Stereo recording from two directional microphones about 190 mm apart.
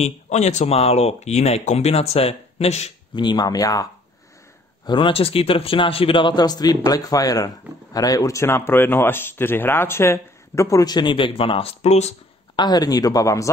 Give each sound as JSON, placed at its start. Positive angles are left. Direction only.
{"t": 0.0, "sound": "speech", "side_deg": 35}
{"t": 3.2, "sound": "speech", "side_deg": 20}
{"t": 4.8, "sound": "speech", "side_deg": 25}
{"t": 12.5, "sound": "speech", "side_deg": 20}